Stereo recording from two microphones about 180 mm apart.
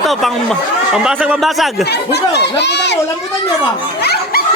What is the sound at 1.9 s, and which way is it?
Speech, 65° left (ahead or behind).